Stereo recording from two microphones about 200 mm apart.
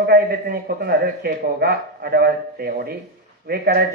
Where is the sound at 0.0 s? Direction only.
50° right (ahead or behind).